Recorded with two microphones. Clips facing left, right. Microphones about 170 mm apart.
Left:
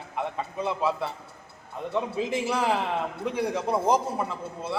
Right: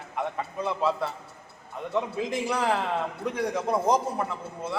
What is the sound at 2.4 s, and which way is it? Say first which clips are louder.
A man's voice: right 1 dB; 10° left (ahead or behind).